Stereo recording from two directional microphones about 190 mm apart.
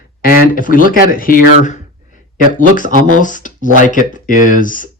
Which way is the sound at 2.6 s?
45° left (ahead or behind).